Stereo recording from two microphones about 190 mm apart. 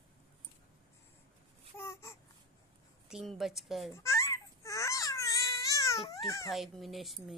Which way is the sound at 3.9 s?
15° left (ahead or behind).